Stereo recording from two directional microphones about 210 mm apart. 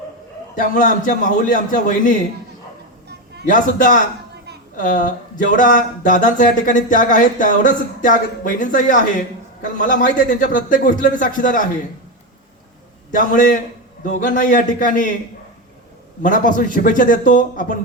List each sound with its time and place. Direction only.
0.7 s speech: 35° left (ahead or behind)
3.4 s speech: 40° left (ahead or behind)
13.3 s speech: 40° left (ahead or behind)
16.2 s speech: 40° left (ahead or behind)